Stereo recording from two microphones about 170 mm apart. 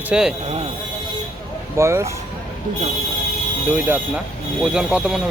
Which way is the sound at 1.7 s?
15° right (ahead or behind).